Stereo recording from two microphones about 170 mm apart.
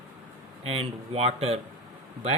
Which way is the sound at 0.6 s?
35° right (ahead or behind).